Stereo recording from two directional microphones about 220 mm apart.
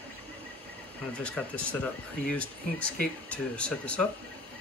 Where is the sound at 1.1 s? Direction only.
5° left (ahead or behind).